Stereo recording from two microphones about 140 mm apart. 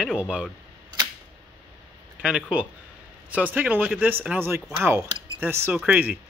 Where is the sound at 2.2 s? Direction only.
5° right (ahead or behind).